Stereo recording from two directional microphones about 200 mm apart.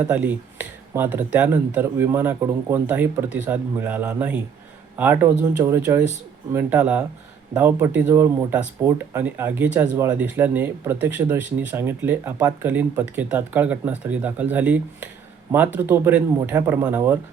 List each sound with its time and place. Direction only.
0.0 s speech: 5° right (ahead or behind)